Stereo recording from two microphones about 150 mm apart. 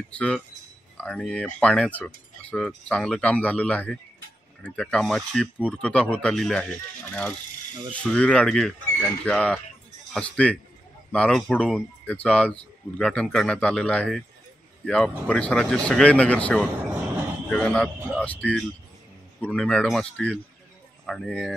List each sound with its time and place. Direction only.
0.1 s a man's voice: 5° left (ahead or behind)